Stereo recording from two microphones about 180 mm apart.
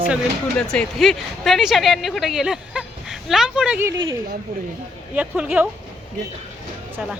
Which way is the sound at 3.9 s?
25° right (ahead or behind).